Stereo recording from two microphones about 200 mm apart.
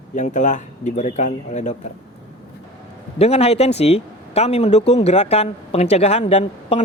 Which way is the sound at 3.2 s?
30° left (ahead or behind).